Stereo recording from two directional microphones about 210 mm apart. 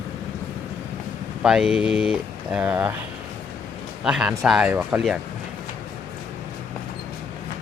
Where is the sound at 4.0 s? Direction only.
5° right (ahead or behind).